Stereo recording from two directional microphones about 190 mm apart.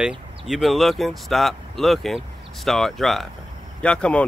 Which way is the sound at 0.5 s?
Centre (ahead or behind).